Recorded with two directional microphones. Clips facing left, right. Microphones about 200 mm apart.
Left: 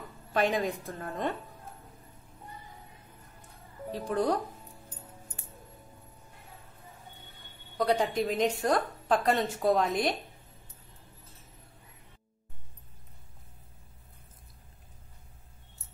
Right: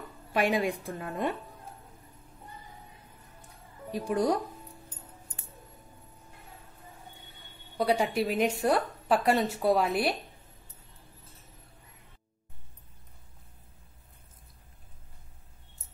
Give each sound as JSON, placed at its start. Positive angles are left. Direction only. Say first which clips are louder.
{"t": 0.3, "sound": "a woman's voice", "louder": "right 1 dB", "side_deg": -10}
{"t": 3.9, "sound": "a woman's voice", "louder": "right 1 dB", "side_deg": -10}
{"t": 7.7, "sound": "a woman's voice", "louder": "even", "side_deg": -10}